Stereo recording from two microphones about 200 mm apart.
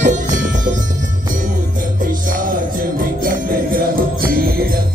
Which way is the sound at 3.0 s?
45° right (ahead or behind).